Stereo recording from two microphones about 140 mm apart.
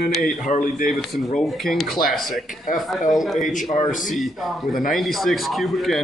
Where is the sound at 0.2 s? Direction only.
70° left (ahead or behind).